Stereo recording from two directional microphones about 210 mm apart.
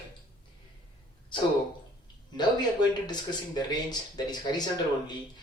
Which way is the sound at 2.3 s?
20° left (ahead or behind).